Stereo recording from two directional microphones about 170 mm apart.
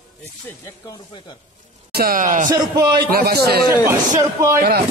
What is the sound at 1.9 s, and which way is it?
Speech, 60° right (ahead or behind).